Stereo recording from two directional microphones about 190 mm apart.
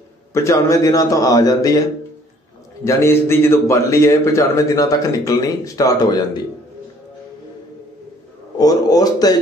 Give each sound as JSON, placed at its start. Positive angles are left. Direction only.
{"t": 0.3, "sound": "a man's voice", "side_deg": 15}
{"t": 2.8, "sound": "a man's voice", "side_deg": 15}
{"t": 8.5, "sound": "a man's voice", "side_deg": 20}